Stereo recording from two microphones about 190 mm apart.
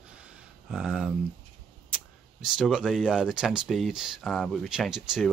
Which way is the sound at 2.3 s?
5° right (ahead or behind).